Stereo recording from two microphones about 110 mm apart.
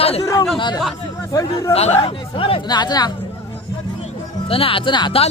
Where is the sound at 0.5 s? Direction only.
45° left (ahead or behind).